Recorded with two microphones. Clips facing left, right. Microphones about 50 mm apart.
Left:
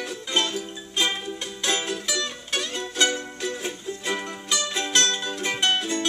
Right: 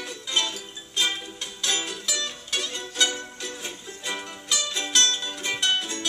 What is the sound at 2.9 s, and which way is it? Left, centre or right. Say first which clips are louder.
Music: left 3 dB; centre.